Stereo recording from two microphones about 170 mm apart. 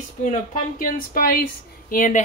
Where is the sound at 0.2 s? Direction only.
50° left (ahead or behind).